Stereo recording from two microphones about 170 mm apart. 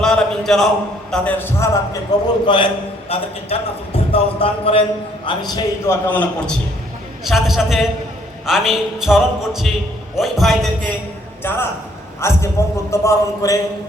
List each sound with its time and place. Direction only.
0.0 s a sound: 5° left (ahead or behind)
1.1 s a man's voice: 10° left (ahead or behind)
2.5 s a man's voice: 30° left (ahead or behind); by 10.9 s centre (ahead or behind)
11.4 s a man's voice: 15° left (ahead or behind)